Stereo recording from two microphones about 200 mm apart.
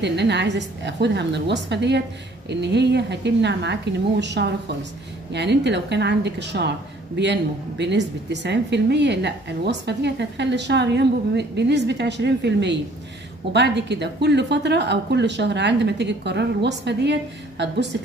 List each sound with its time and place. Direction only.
0.0 s a woman's voice: 60° right (ahead or behind)